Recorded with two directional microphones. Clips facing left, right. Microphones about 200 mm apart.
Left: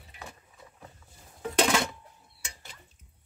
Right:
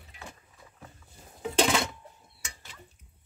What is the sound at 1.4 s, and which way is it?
Dishes, 5° right (ahead or behind).